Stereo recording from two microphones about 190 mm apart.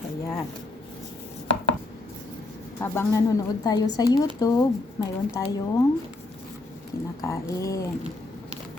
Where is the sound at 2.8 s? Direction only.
15° left (ahead or behind).